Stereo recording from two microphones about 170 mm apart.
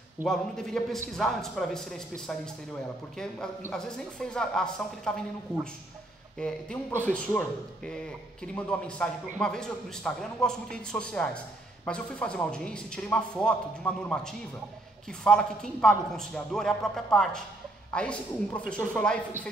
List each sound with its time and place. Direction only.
0.3 s a man's voice: 5° left (ahead or behind)
3.7 s a man's voice: 5° left (ahead or behind)